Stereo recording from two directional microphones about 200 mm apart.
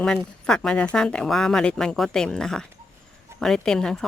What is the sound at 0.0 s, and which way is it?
Speech, 5° left (ahead or behind).